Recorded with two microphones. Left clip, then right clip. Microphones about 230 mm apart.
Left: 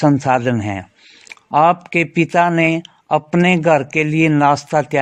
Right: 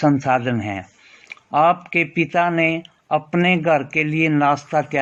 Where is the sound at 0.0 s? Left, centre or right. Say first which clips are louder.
Left 3 dB; left.